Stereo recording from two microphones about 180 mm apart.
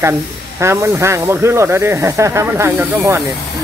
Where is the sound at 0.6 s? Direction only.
15° right (ahead or behind).